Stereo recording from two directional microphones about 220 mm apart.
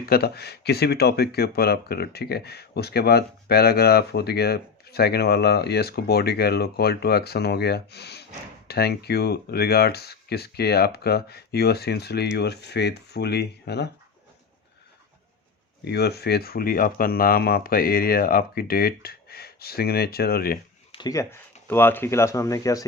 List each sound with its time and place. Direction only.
0.0 s speech: 45° left (ahead or behind)
15.8 s speech: 50° left (ahead or behind)
20.9 s speech: 15° left (ahead or behind)